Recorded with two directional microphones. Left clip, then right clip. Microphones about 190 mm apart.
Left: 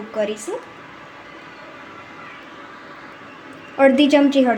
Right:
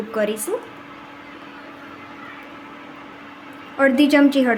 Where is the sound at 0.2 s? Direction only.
20° right (ahead or behind).